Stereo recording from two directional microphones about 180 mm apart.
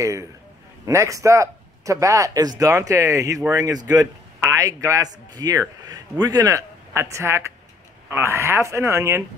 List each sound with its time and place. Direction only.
0.0 s a man's voice: 15° right (ahead or behind)